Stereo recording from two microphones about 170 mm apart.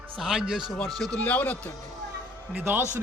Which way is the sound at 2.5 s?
10° right (ahead or behind).